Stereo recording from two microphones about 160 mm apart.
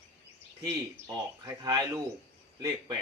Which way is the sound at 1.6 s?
20° right (ahead or behind).